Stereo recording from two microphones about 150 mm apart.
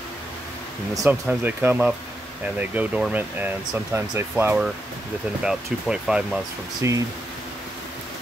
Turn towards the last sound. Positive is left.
turn(degrees=-20)  # may be behind; listen again after turning